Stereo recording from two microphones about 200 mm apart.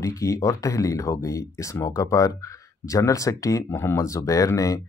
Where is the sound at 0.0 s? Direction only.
15° left (ahead or behind).